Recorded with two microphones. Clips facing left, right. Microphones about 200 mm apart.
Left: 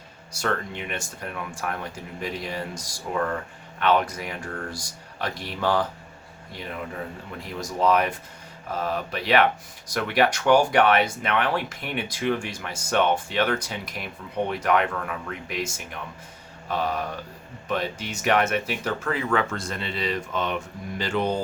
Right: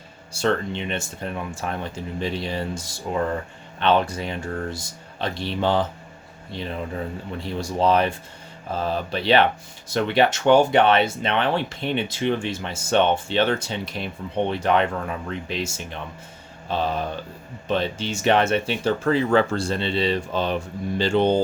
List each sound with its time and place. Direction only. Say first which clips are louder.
0.3 s speech: right 5 dB; 25° right (ahead or behind)